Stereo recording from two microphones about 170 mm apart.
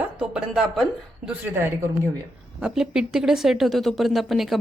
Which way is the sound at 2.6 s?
5° right (ahead or behind).